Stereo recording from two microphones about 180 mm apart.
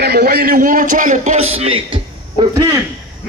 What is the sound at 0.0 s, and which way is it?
A man's voice, 60° right (ahead or behind).